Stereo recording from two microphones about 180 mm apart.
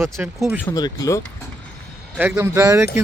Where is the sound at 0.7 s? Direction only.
20° left (ahead or behind).